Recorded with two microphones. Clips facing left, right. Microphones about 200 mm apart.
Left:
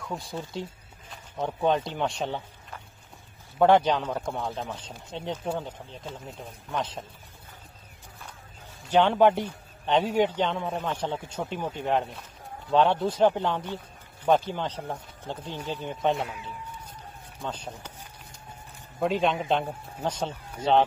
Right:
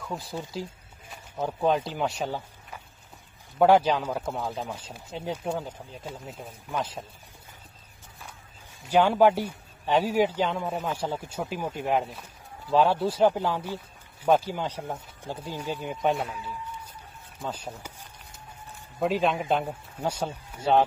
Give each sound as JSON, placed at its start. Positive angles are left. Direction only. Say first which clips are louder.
{"t": 0.0, "sound": "a man's voice", "louder": "even", "side_deg": 0}
{"t": 8.8, "sound": "a man's voice", "louder": "even", "side_deg": -10}
{"t": 17.4, "sound": "a man's voice", "louder": "right 1 dB", "side_deg": -10}
{"t": 18.9, "sound": "a man's voice", "louder": "even", "side_deg": 0}